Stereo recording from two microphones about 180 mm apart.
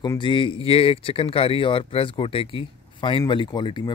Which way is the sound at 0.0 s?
25° left (ahead or behind).